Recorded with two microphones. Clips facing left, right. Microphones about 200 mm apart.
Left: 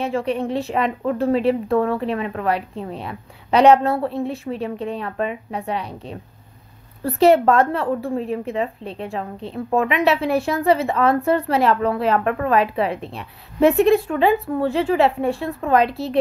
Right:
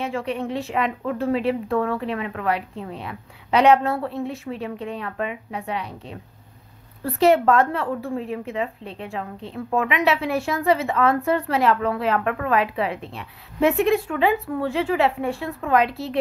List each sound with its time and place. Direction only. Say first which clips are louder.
0.0 s speech: left 4 dB; 30° left (ahead or behind)